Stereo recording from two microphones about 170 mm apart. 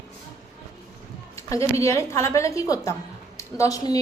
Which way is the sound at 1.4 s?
20° left (ahead or behind).